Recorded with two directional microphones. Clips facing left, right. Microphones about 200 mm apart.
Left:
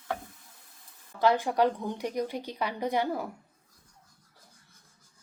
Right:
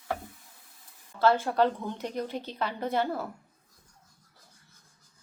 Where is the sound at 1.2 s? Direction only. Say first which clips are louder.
Even; 15° left (ahead or behind).